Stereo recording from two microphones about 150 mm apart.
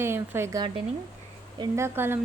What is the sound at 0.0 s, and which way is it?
A woman's voice, 15° right (ahead or behind).